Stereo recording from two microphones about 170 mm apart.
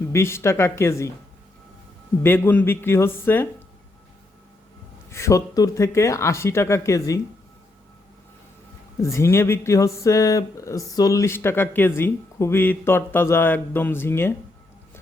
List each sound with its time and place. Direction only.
0.0 s speech: 15° left (ahead or behind)
2.2 s speech: 10° left (ahead or behind)
5.1 s speech: 15° left (ahead or behind)
9.0 s speech: 15° left (ahead or behind)